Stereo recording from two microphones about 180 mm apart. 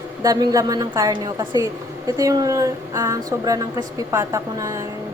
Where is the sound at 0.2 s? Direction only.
20° right (ahead or behind).